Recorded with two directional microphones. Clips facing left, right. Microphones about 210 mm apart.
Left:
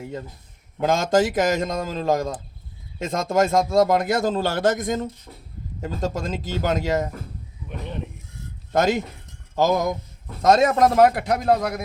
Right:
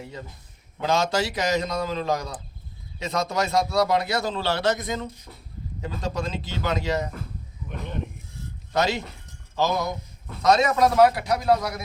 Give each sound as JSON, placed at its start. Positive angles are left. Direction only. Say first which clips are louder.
{"t": 0.8, "sound": "a man's voice", "louder": "left 4 dB", "side_deg": 50}
{"t": 8.7, "sound": "a man's voice", "louder": "left 4 dB", "side_deg": 50}